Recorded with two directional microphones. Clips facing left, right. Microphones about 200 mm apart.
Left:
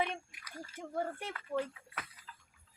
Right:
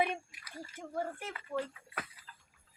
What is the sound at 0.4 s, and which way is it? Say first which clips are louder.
Splash: even; 5° right (ahead or behind).